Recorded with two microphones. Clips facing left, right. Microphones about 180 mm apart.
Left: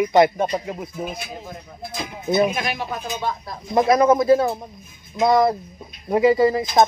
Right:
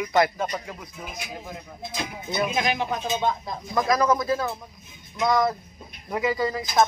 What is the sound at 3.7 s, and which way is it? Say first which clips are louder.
Speech: left 6 dB; 25° left (ahead or behind).